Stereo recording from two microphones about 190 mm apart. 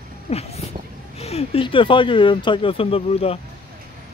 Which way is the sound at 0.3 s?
35° left (ahead or behind).